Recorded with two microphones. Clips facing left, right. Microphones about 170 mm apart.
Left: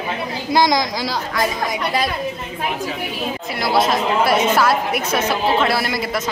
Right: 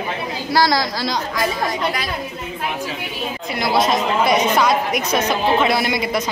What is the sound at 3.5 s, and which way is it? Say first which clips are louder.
A woman's voice: even; centre (ahead or behind).